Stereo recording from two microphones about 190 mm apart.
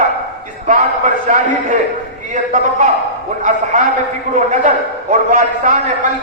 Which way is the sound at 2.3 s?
40° right (ahead or behind).